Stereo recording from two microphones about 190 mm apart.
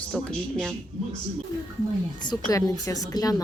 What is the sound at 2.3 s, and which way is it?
A woman's voice, 20° left (ahead or behind).